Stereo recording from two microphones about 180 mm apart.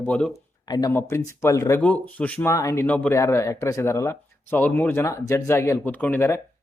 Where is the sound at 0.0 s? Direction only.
5° left (ahead or behind).